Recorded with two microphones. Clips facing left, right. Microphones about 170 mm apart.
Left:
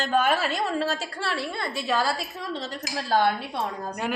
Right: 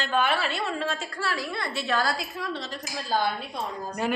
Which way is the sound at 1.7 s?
10° left (ahead or behind).